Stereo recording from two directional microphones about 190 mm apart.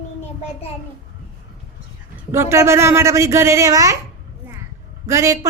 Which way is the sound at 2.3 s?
15° right (ahead or behind).